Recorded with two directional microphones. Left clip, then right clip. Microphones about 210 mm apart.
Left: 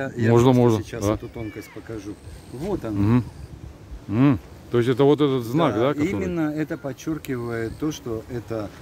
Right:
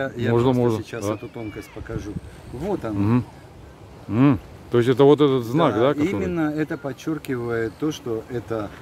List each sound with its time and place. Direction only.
0.3 s speech: 25° left (ahead or behind)
0.7 s speech: 10° left (ahead or behind)
5.9 s speech: 15° left (ahead or behind)